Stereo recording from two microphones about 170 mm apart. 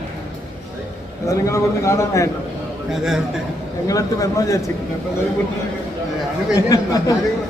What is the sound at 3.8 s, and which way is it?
Speech, 20° left (ahead or behind).